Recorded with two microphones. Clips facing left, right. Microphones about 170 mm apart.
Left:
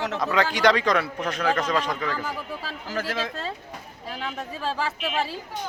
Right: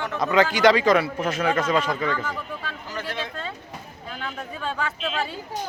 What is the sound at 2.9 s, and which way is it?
Speech, 90° left.